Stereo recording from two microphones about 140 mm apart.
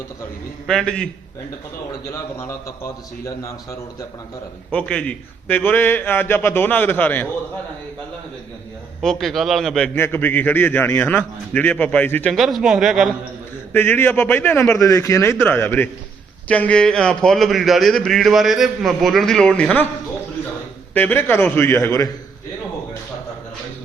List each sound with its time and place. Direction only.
0.7 s speech: 5° left (ahead or behind)
2.1 s a man's voice: 20° left (ahead or behind)
4.7 s a man's voice: 10° left (ahead or behind)
9.0 s speech: centre (ahead or behind)
9.9 s a man's voice: 15° left (ahead or behind)
12.3 s speech: centre (ahead or behind)
13.7 s a man's voice: 15° left (ahead or behind)
20.9 s a man's voice: 10° left (ahead or behind)